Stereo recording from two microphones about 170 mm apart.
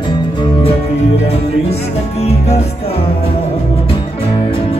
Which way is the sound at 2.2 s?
40° left (ahead or behind).